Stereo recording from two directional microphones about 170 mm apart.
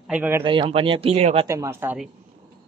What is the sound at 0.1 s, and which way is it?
Speech, 10° right (ahead or behind).